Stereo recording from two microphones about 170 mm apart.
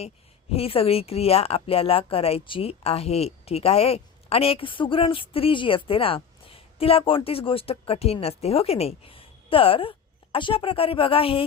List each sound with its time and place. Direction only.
0.5 s a woman's voice: 35° left (ahead or behind)